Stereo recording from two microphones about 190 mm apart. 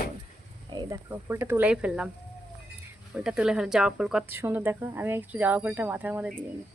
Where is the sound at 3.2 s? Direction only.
5° right (ahead or behind).